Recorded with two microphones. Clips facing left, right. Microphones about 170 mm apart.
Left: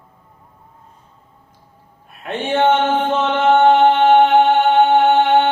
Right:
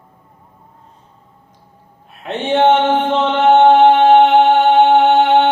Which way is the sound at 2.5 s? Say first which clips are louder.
Right 3 dB; 15° right (ahead or behind).